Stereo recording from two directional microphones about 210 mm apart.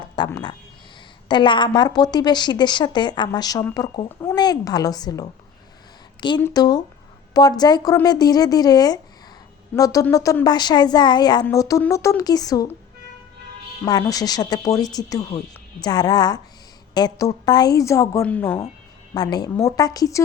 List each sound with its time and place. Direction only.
0.2 s a woman's voice: 20° left (ahead or behind)
13.8 s a woman's voice: 20° left (ahead or behind)
19.1 s speech: 20° left (ahead or behind)